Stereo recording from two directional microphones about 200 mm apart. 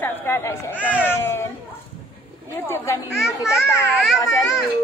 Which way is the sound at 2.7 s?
15° left (ahead or behind).